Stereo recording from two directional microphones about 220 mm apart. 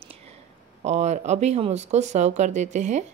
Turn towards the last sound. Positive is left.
turn(degrees=-35)  # may be behind; listen again after turning